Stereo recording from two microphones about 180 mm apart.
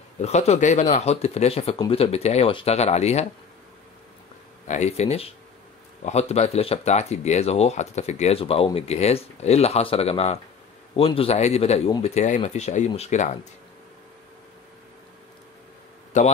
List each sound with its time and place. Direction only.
0.2 s speech: 35° left (ahead or behind)
4.6 s speech: 40° left (ahead or behind)
16.1 s speech: 45° left (ahead or behind)